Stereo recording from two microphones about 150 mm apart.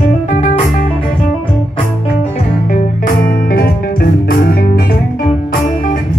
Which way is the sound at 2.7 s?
70° left (ahead or behind).